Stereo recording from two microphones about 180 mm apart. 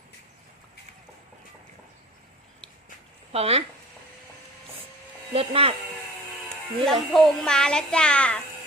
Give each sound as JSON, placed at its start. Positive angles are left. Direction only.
{"t": 3.3, "sound": "speech", "side_deg": -35}
{"t": 5.3, "sound": "speech", "side_deg": -30}
{"t": 6.5, "sound": "speech", "side_deg": 0}